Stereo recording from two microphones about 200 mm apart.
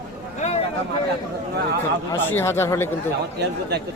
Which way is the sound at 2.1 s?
10° left (ahead or behind).